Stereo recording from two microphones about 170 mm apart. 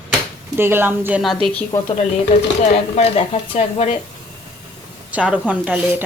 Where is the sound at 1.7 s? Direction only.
15° left (ahead or behind).